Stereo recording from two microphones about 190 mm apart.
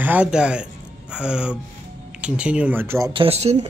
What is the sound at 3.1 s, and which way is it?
Speech, 30° right (ahead or behind).